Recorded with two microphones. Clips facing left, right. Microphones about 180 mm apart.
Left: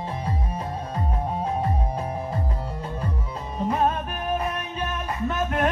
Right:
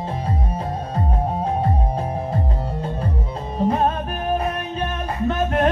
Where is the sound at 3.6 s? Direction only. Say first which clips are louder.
Right 4 dB; 30° right (ahead or behind).